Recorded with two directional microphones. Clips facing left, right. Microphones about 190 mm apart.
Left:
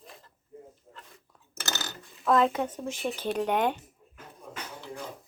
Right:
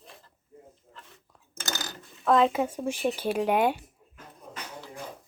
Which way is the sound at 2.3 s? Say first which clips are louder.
Right 2 dB; centre (ahead or behind).